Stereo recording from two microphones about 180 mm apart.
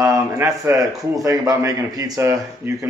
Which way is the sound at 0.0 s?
15° right (ahead or behind).